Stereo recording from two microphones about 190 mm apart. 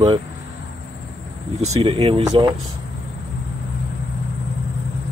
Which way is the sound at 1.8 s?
30° right (ahead or behind).